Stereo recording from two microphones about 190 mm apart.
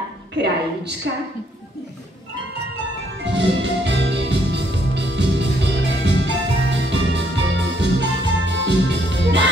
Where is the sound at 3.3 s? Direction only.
65° right (ahead or behind).